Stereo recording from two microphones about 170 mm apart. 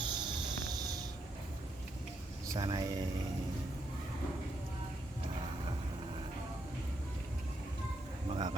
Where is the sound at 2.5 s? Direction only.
25° right (ahead or behind).